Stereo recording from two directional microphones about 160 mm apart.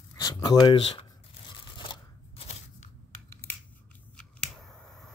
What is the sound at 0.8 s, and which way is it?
Speech, 40° left (ahead or behind).